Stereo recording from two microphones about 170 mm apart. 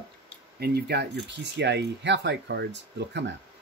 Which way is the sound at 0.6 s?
70° right (ahead or behind).